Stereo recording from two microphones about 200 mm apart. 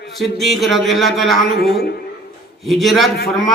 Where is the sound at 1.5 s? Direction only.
50° left (ahead or behind).